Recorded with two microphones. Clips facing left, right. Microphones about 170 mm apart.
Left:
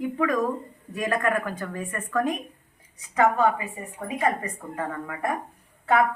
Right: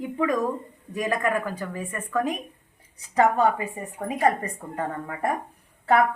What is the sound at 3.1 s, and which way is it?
Speech, 35° right (ahead or behind).